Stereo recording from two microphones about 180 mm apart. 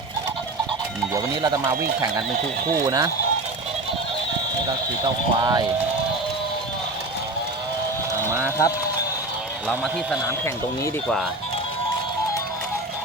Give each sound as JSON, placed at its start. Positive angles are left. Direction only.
{"t": 1.1, "sound": "speech", "side_deg": -20}
{"t": 5.0, "sound": "speech", "side_deg": -20}
{"t": 8.4, "sound": "speech", "side_deg": 15}
{"t": 9.6, "sound": "a man's voice", "side_deg": 0}